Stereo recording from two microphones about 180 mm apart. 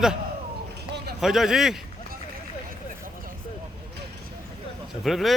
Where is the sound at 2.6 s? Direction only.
50° right (ahead or behind).